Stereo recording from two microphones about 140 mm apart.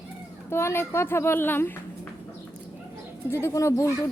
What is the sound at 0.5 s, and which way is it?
Speech, 15° left (ahead or behind).